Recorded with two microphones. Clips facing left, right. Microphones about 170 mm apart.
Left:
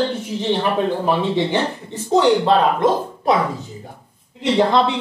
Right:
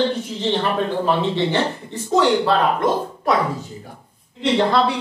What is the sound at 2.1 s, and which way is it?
Speech, 20° left (ahead or behind).